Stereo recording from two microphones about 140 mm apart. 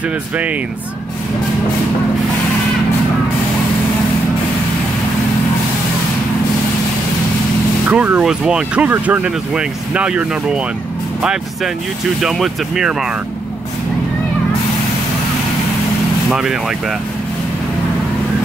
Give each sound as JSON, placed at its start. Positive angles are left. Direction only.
{"t": 7.9, "sound": "speech", "side_deg": -10}
{"t": 12.2, "sound": "speech", "side_deg": -5}
{"t": 16.3, "sound": "speech", "side_deg": -5}